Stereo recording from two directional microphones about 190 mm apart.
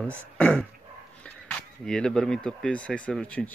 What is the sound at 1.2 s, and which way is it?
Speech, 5° left (ahead or behind).